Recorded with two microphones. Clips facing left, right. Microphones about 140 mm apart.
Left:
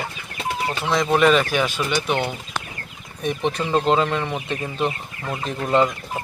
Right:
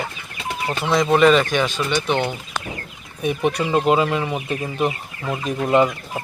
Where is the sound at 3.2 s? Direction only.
10° right (ahead or behind).